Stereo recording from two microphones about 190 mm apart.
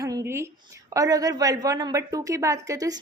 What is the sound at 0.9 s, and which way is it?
A woman's voice, 20° right (ahead or behind).